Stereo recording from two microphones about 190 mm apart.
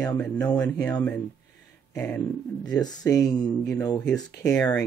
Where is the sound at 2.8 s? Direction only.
20° left (ahead or behind).